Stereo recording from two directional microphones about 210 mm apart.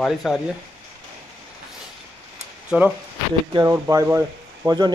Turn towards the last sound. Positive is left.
turn(degrees=-15)  # may be behind; listen again after turning